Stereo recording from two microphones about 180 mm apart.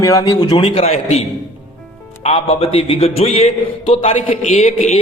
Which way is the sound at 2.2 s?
35° left (ahead or behind).